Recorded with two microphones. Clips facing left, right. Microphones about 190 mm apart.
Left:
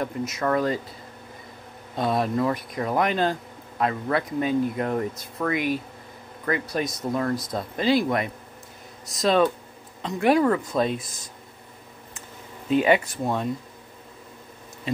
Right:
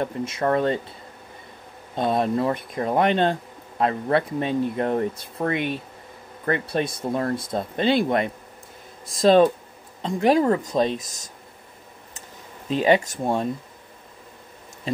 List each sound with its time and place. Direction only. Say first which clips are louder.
0.0 s speech: right 2 dB; 30° right (ahead or behind)
2.0 s speech: right 2 dB; 25° right (ahead or behind)
12.6 s speech: right 1 dB; 30° right (ahead or behind)
13.2 s speech: right 2 dB; 30° right (ahead or behind)